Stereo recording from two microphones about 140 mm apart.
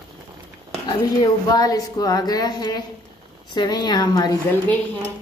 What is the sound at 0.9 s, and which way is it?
Speech, 25° left (ahead or behind).